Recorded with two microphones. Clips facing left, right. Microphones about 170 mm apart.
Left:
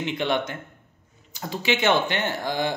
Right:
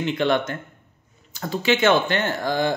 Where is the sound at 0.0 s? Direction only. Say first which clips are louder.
Right 4 dB; 15° left (ahead or behind).